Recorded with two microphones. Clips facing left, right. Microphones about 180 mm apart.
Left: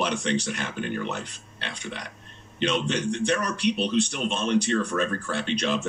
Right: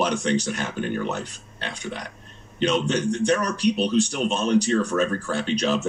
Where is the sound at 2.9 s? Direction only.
35° right (ahead or behind).